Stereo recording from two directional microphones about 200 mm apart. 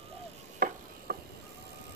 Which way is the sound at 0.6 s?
45° right (ahead or behind).